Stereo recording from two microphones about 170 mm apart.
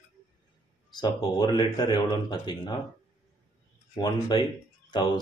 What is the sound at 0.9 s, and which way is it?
Speech, 25° left (ahead or behind).